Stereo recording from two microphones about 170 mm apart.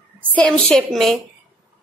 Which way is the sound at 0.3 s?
5° left (ahead or behind).